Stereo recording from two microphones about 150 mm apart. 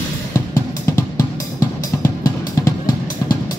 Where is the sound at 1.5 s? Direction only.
20° left (ahead or behind).